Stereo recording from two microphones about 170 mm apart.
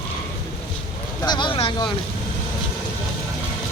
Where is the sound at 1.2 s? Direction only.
25° left (ahead or behind).